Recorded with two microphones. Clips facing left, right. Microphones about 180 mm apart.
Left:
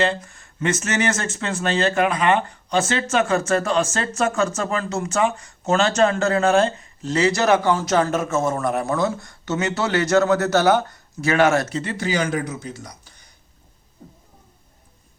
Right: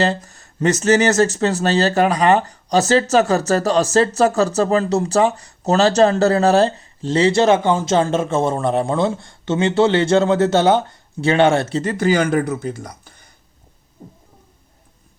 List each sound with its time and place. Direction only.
0.0 s speech: 35° right (ahead or behind)
11.9 s speech: 50° right (ahead or behind)